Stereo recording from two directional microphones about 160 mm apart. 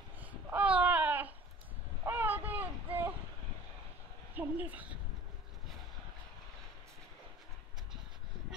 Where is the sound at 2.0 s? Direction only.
10° right (ahead or behind).